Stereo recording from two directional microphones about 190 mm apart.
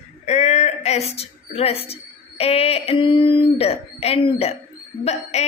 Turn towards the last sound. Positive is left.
turn(degrees=35)  # may be behind; listen again after turning